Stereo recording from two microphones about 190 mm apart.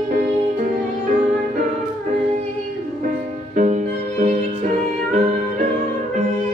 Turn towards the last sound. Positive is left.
turn(degrees=-40)  # may be behind; listen again after turning